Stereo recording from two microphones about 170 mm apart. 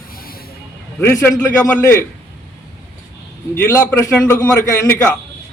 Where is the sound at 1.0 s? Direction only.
15° left (ahead or behind).